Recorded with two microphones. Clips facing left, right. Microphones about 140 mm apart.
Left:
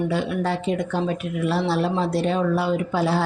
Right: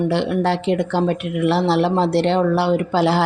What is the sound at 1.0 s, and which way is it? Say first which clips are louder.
A woman's voice: right 5 dB; 65° right (ahead or behind).